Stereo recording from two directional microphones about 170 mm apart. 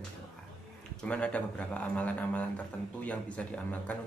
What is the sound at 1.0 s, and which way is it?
A man's voice, 5° left (ahead or behind).